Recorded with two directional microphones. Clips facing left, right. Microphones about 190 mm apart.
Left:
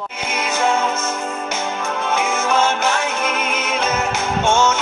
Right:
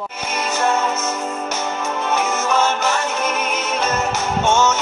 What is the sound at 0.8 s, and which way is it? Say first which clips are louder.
Music: even; 5° right (ahead or behind).